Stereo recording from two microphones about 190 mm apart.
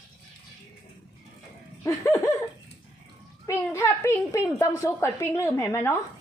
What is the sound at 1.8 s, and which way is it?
Speech, 15° left (ahead or behind).